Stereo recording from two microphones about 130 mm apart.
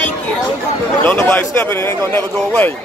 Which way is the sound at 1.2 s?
15° left (ahead or behind).